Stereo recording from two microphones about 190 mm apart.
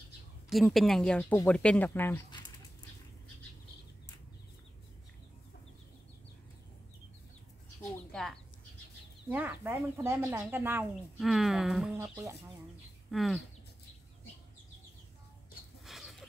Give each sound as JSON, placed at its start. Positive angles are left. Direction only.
{"t": 0.5, "sound": "speech", "side_deg": 0}
{"t": 8.1, "sound": "chicken", "side_deg": 0}
{"t": 9.3, "sound": "speech", "side_deg": -10}
{"t": 12.0, "sound": "speech", "side_deg": -15}
{"t": 13.1, "sound": "speech", "side_deg": 0}
{"t": 15.8, "sound": "a sound", "side_deg": 0}